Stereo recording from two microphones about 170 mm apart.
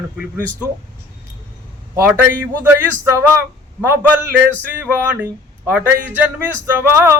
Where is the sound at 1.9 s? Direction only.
10° right (ahead or behind).